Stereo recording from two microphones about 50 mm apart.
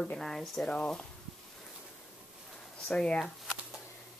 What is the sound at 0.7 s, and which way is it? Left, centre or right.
Speech, centre.